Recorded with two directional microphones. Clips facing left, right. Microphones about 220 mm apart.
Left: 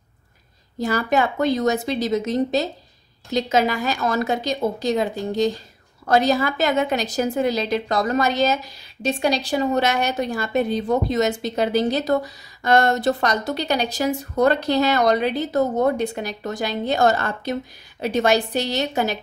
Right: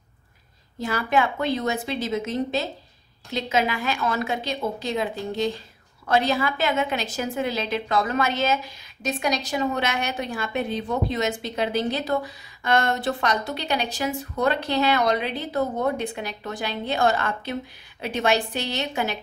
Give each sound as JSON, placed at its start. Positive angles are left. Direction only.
{"t": 0.7, "sound": "a woman's voice", "side_deg": 40}